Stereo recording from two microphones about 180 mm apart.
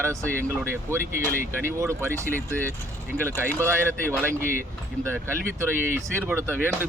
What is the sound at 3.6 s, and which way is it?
Speech, 15° right (ahead or behind).